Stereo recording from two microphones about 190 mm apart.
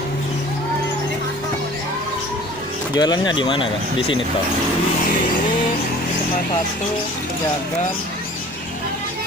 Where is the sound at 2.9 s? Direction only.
20° left (ahead or behind).